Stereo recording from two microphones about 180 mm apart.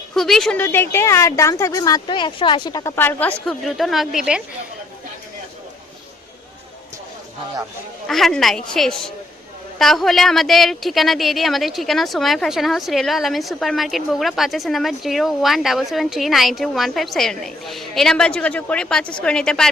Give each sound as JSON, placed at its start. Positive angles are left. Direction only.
{"t": 0.1, "sound": "speech", "side_deg": 0}
{"t": 0.6, "sound": "speech", "side_deg": 15}
{"t": 8.0, "sound": "speech", "side_deg": 0}